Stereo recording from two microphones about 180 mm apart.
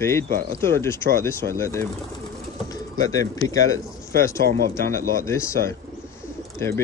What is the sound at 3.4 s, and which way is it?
A man's voice, 20° left (ahead or behind).